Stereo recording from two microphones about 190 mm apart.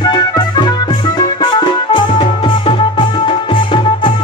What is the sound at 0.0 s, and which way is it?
Music, 20° left (ahead or behind).